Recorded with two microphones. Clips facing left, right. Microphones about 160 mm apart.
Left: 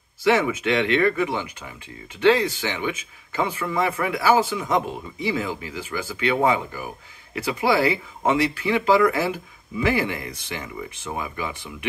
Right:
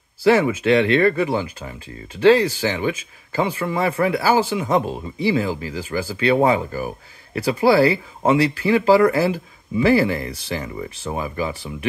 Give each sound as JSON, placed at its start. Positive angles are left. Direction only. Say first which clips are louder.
{"t": 0.2, "sound": "speech", "louder": "right 4 dB", "side_deg": -35}